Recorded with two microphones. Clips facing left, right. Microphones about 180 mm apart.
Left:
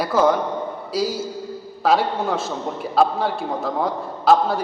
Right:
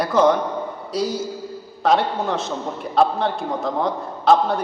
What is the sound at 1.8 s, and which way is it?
A man's voice, 5° left (ahead or behind).